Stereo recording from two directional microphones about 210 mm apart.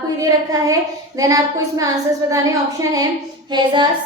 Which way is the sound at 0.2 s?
15° right (ahead or behind).